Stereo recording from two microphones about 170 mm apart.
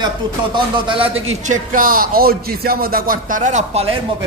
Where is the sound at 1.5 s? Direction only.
55° right (ahead or behind); by 4.0 s 35° right (ahead or behind).